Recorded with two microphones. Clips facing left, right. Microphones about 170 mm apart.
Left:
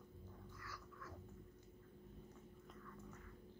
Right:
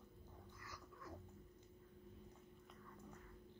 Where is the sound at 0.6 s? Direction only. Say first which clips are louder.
Even; 20° right (ahead or behind).